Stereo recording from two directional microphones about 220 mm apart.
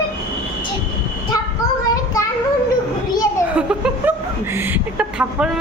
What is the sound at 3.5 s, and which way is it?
A woman's voice, 5° right (ahead or behind).